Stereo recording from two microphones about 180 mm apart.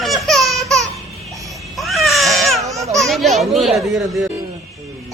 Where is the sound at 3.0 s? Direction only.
Centre (ahead or behind).